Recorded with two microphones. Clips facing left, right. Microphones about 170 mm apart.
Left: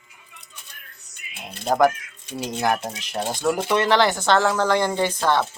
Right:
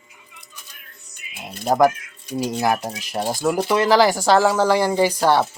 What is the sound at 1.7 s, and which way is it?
Speech, 5° right (ahead or behind).